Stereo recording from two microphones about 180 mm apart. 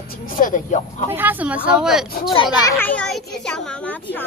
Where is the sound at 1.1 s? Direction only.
10° right (ahead or behind).